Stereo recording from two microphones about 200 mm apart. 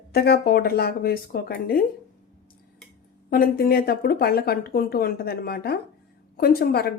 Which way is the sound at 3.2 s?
45° left (ahead or behind).